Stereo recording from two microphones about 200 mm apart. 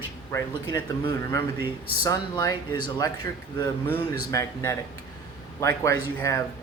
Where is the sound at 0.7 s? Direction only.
20° left (ahead or behind).